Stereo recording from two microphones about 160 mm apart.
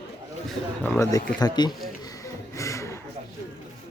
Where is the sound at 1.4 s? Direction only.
25° left (ahead or behind).